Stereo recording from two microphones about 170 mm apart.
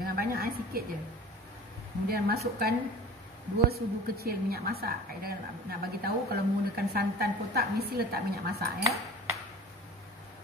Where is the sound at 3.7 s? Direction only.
65° right (ahead or behind).